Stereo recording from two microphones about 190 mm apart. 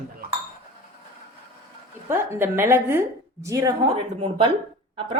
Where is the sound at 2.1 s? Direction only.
15° right (ahead or behind).